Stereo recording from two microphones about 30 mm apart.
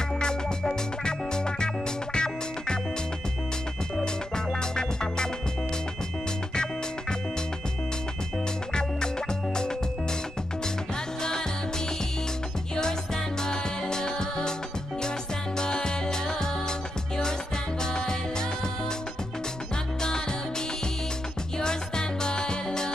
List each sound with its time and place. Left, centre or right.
0.2 s music: left
4.7 s music: left
6.5 s music: left
13.4 s music: left
15.5 s music: left
21.5 s music: left